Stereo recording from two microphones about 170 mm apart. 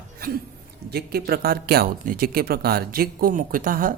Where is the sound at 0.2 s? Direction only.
60° right (ahead or behind).